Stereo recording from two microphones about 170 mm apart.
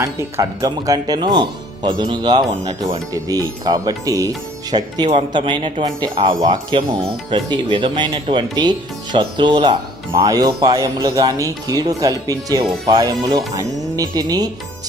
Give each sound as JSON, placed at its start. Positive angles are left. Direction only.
{"t": 0.0, "sound": "speech", "side_deg": -20}